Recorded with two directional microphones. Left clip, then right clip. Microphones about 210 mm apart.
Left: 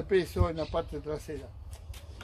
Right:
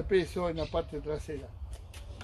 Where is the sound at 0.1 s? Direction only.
15° left (ahead or behind).